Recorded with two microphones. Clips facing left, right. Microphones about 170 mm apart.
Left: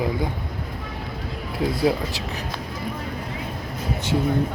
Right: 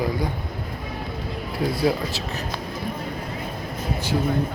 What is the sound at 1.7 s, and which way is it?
Speech, 15° left (ahead or behind).